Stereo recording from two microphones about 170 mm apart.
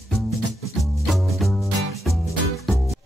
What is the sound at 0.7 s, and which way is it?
Music, centre (ahead or behind).